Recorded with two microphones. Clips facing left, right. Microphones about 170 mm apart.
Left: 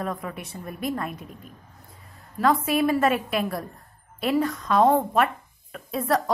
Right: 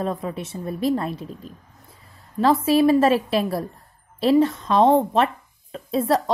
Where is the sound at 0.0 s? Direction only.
25° right (ahead or behind).